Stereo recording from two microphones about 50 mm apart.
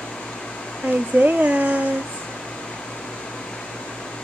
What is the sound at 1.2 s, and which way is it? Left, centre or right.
Speech, right.